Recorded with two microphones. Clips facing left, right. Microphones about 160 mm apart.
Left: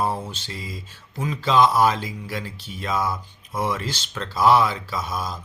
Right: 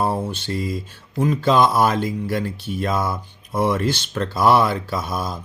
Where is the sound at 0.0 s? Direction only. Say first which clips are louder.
Right 4 dB; 60° right (ahead or behind).